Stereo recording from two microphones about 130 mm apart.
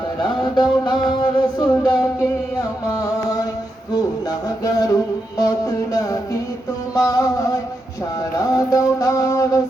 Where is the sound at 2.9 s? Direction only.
25° left (ahead or behind).